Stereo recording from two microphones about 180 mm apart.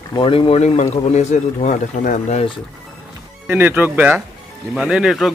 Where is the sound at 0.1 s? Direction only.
25° left (ahead or behind).